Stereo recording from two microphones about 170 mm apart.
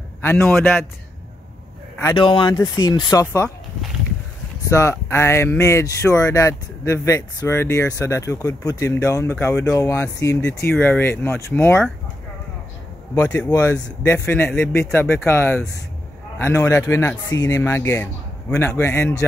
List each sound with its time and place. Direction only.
0.2 s speech: 10° left (ahead or behind)
2.1 s speech: 30° left (ahead or behind)
4.6 s speech: 15° left (ahead or behind)
13.2 s speech: 10° left (ahead or behind)